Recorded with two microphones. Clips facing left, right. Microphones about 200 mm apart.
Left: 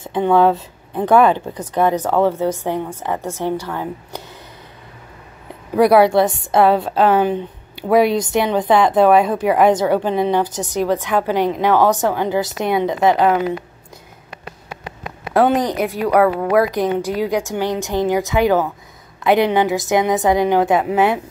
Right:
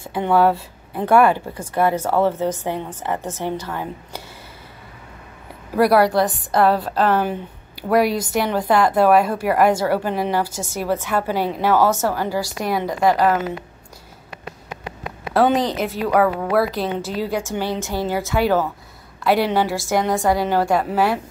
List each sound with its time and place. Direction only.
0.0 s a woman's voice: 10° right (ahead or behind)
1.9 s a woman's voice: 15° left (ahead or behind)
5.8 s a woman's voice: centre (ahead or behind)
10.4 s a woman's voice: 20° left (ahead or behind)
11.1 s a woman's voice: 10° right (ahead or behind)
11.8 s a woman's voice: 15° left (ahead or behind)
15.3 s a woman's voice: 15° left (ahead or behind)